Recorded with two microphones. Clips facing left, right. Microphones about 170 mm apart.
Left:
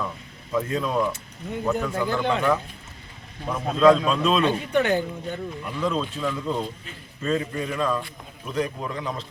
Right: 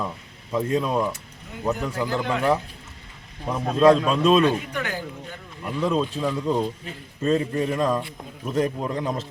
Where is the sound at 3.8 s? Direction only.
15° right (ahead or behind).